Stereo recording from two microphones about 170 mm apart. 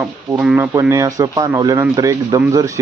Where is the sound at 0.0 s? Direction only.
5° right (ahead or behind).